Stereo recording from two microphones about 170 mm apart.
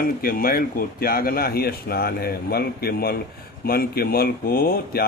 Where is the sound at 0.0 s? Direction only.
60° left (ahead or behind).